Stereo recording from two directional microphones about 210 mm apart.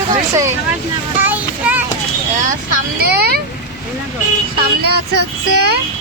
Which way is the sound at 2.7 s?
45° right (ahead or behind).